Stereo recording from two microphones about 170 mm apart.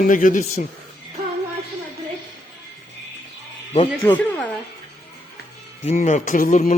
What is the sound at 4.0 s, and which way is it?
Speech, 10° left (ahead or behind).